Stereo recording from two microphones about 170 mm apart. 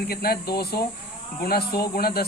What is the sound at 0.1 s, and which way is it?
Speech, 65° left (ahead or behind).